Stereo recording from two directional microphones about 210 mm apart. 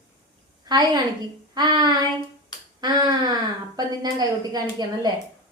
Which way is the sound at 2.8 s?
20° right (ahead or behind).